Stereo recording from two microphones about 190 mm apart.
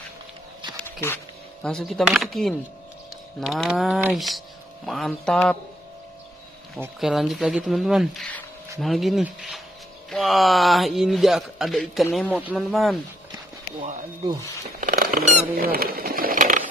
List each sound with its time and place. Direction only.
1.0 s speech: 10° left (ahead or behind)
7.0 s speech: centre (ahead or behind)
14.8 s a sound: 45° right (ahead or behind)